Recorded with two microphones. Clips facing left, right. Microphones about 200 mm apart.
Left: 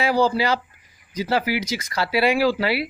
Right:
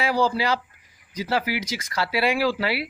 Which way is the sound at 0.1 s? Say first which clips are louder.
Left 3 dB; 25° left (ahead or behind).